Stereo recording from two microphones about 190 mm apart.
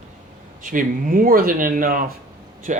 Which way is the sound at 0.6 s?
45° right (ahead or behind).